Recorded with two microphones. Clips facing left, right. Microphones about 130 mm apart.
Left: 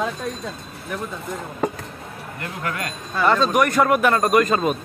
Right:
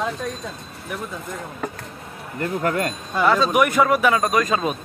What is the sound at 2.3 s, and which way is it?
Speech, 35° right (ahead or behind).